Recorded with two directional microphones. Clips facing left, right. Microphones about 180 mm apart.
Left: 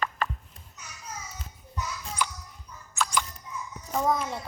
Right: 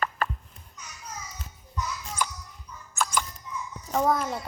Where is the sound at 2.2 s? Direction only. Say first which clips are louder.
Even; 45° right (ahead or behind).